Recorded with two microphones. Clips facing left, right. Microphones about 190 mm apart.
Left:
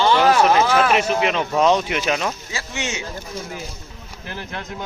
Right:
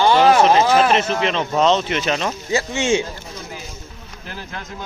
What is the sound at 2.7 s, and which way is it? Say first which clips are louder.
Speech: right 8 dB; 30° right (ahead or behind).